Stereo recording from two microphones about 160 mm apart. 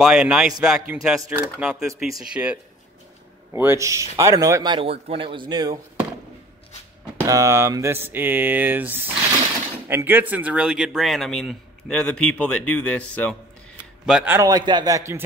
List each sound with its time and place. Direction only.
0.0 s a man's voice: 5° right (ahead or behind); by 4.7 s 20° right (ahead or behind)
4.7 s speech: 35° right (ahead or behind)
7.2 s a man's voice: 20° right (ahead or behind); by 13.4 s 5° left (ahead or behind)
14.0 s speech: 5° right (ahead or behind)
14.5 s speech: 25° right (ahead or behind)